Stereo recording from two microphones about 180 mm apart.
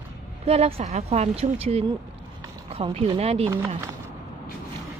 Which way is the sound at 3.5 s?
20° right (ahead or behind).